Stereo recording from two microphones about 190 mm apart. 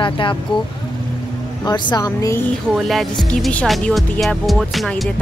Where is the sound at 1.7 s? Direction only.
20° left (ahead or behind).